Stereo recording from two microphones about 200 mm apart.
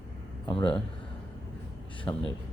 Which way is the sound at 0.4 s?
25° left (ahead or behind).